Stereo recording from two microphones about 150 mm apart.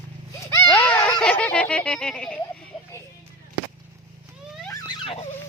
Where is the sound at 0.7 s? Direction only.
10° left (ahead or behind).